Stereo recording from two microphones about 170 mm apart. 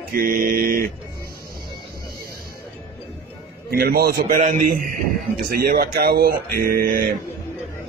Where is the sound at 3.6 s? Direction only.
60° right (ahead or behind).